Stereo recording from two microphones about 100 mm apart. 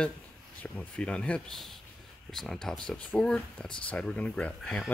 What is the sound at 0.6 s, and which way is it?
Speech, 15° left (ahead or behind).